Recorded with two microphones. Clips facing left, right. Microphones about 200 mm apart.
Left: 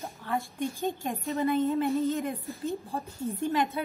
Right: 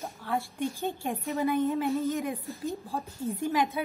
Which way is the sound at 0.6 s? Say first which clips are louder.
Left 1 dB; 15° left (ahead or behind).